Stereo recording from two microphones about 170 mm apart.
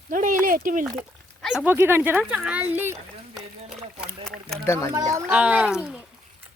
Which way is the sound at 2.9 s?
Centre (ahead or behind).